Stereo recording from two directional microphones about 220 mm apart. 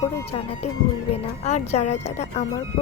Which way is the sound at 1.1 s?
30° left (ahead or behind).